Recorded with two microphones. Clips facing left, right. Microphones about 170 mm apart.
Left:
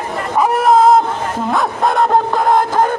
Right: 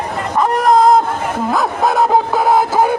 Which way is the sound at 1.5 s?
Centre (ahead or behind).